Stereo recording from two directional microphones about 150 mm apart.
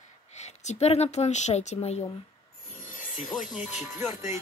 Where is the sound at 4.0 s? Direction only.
15° right (ahead or behind).